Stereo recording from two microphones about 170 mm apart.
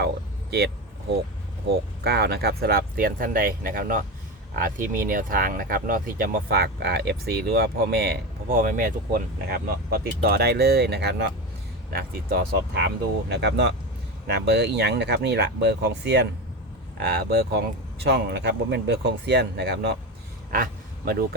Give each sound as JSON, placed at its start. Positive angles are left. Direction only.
{"t": 2.0, "sound": "speech", "side_deg": -70}
{"t": 11.9, "sound": "speech", "side_deg": -65}
{"t": 14.3, "sound": "speech", "side_deg": -75}
{"t": 17.1, "sound": "speech", "side_deg": -65}
{"t": 20.5, "sound": "a sound", "side_deg": -60}